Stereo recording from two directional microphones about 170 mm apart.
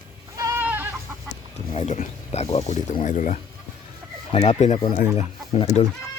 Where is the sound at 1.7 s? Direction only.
40° left (ahead or behind).